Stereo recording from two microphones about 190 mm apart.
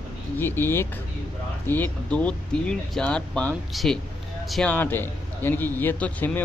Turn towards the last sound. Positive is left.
turn(degrees=10)  # may be behind; listen again after turning